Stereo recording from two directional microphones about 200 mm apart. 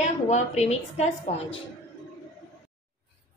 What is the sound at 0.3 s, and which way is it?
Speech, 35° left (ahead or behind).